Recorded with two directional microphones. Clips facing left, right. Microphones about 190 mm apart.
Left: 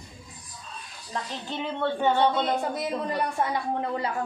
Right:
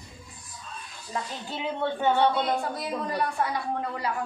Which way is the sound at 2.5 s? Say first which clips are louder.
Left 2 dB; 20° left (ahead or behind).